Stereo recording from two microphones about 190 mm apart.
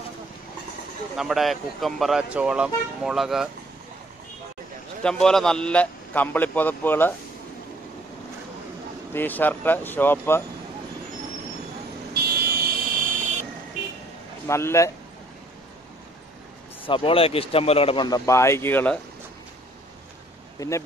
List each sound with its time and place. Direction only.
1.1 s speech: centre (ahead or behind)
5.0 s a man's voice: 5° left (ahead or behind)
9.1 s a man's voice: 10° left (ahead or behind)
12.1 s vehicle: 50° right (ahead or behind)
14.5 s a man's voice: 15° left (ahead or behind)
16.8 s speech: 30° left (ahead or behind); by 18.9 s 10° left (ahead or behind)
20.5 s speech: 15° left (ahead or behind)